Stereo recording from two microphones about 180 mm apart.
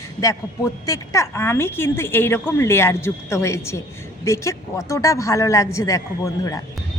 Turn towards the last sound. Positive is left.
turn(degrees=20)  # may be behind; listen again after turning